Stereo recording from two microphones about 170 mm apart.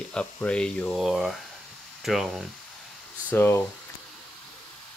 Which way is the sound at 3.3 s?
15° left (ahead or behind).